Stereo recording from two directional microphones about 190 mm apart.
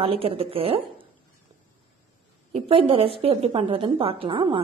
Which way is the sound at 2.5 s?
30° right (ahead or behind).